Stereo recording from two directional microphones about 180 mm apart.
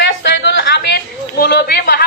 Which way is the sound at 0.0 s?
75° left (ahead or behind).